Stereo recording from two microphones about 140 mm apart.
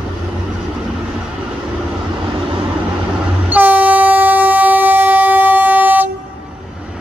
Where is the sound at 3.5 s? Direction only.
10° right (ahead or behind).